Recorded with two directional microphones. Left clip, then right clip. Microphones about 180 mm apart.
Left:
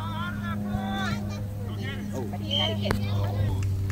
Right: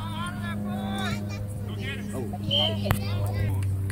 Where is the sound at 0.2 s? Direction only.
50° right (ahead or behind).